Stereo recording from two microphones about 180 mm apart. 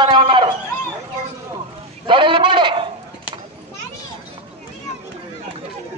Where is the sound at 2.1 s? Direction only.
30° right (ahead or behind).